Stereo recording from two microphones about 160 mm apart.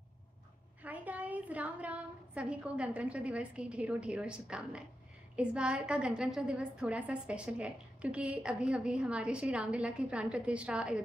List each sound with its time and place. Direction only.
0.8 s a woman's voice: 10° right (ahead or behind)